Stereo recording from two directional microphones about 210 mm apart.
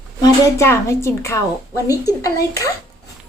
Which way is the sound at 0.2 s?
15° left (ahead or behind).